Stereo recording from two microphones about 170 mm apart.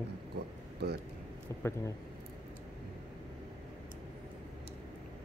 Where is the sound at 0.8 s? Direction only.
75° right (ahead or behind).